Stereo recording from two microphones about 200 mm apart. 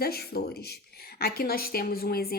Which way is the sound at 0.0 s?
50° left (ahead or behind).